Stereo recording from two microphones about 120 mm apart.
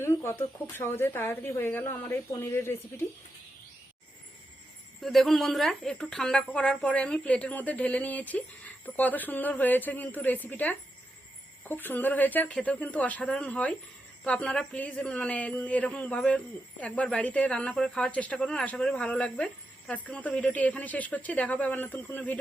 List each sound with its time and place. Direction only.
0.0 s speech: 25° left (ahead or behind)
4.9 s a woman's voice: centre (ahead or behind)